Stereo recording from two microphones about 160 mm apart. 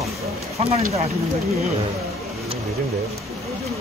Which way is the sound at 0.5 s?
40° right (ahead or behind).